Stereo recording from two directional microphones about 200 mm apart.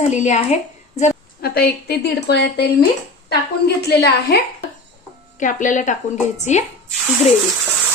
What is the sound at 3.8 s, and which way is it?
Speech, 55° left (ahead or behind).